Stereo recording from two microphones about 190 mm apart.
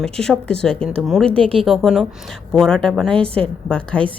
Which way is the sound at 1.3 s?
30° right (ahead or behind).